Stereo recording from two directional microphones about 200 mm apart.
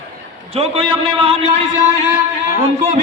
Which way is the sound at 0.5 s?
30° right (ahead or behind).